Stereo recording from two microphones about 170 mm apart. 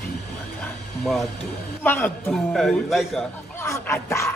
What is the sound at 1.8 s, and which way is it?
Speech, 10° left (ahead or behind).